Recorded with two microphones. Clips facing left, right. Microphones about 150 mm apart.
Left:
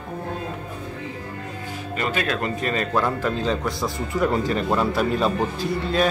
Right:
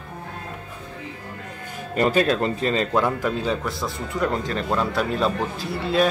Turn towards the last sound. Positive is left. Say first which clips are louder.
# even
turn(degrees=0)  # may be behind; listen again after turning